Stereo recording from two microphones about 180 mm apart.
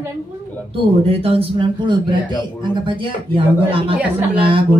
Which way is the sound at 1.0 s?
30° right (ahead or behind).